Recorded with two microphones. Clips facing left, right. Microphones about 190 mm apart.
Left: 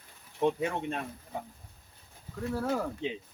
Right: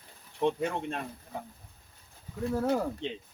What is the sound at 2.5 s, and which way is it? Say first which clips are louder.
Speech: right 3 dB; 20° right (ahead or behind).